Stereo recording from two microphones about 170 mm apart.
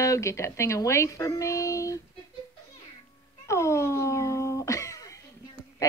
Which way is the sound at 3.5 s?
15° left (ahead or behind).